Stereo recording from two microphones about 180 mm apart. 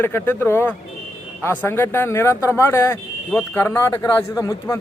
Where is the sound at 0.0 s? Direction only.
10° left (ahead or behind).